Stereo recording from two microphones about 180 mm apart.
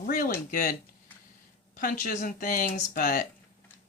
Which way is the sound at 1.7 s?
50° left (ahead or behind).